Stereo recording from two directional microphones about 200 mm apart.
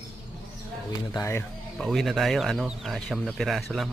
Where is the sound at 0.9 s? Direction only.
15° left (ahead or behind).